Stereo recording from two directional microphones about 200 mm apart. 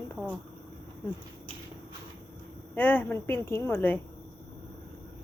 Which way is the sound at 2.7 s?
10° left (ahead or behind).